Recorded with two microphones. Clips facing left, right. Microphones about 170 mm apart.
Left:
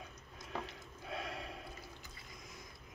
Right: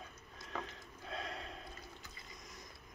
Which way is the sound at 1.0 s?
5° left (ahead or behind).